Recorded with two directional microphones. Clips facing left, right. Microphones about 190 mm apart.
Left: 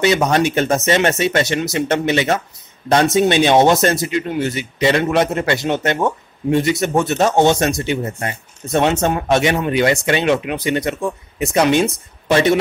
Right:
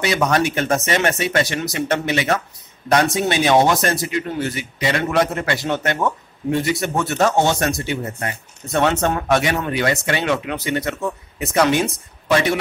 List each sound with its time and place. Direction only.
0.0 s speech: 25° left (ahead or behind)